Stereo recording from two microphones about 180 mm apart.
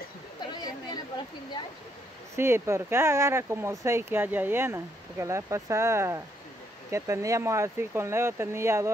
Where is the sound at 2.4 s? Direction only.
15° right (ahead or behind).